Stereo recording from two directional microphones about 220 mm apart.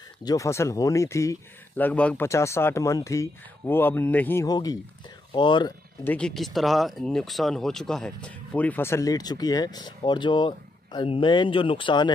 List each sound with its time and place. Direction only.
0.2 s speech: 15° left (ahead or behind)
6.0 s speech: 5° left (ahead or behind); by 12.1 s 20° left (ahead or behind)